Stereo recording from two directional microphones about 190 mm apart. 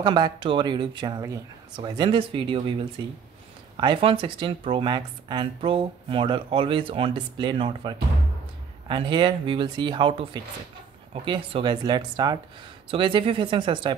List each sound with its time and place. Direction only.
0.0 s speech: 25° right (ahead or behind)